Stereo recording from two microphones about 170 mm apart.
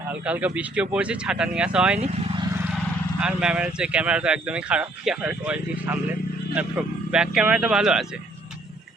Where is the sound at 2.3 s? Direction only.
25° right (ahead or behind).